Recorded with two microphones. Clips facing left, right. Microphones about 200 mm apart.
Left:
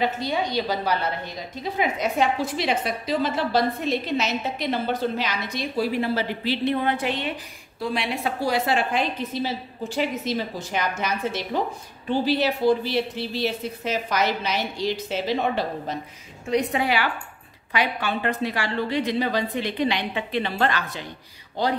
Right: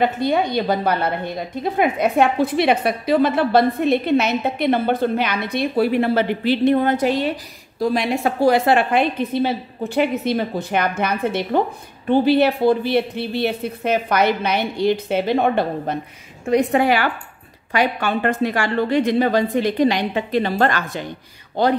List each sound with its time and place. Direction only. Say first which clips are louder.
0.0 s a woman's voice: right 6 dB; 55° right (ahead or behind)